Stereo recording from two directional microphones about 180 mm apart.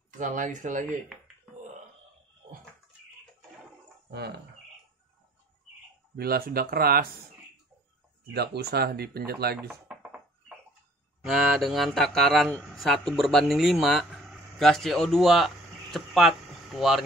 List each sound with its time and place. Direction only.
0.2 s speech: 45° right (ahead or behind)
1.0 s a sound: centre (ahead or behind)
6.1 s speech: 60° right (ahead or behind)
8.3 s speech: 65° right (ahead or behind)
9.7 s a sound: 5° right (ahead or behind)
11.2 s speech: centre (ahead or behind)